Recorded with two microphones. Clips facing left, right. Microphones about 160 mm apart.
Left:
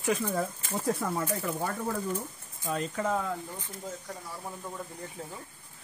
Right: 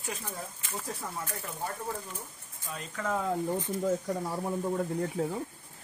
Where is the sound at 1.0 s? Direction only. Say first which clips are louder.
Left 8 dB; 65° left (ahead or behind).